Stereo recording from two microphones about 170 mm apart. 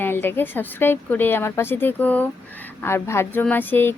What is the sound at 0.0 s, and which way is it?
A woman's voice, 10° left (ahead or behind).